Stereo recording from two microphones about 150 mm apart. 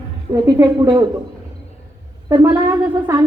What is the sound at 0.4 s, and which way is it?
Speech, 30° right (ahead or behind).